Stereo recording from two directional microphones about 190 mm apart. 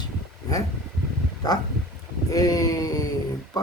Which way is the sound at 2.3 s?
20° left (ahead or behind).